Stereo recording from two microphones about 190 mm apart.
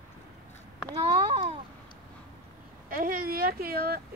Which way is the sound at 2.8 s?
50° right (ahead or behind).